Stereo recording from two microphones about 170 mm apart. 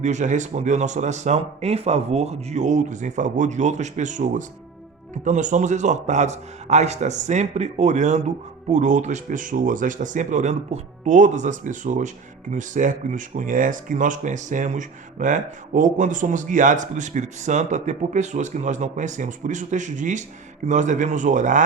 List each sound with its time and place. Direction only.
0.0 s speech: 45° right (ahead or behind)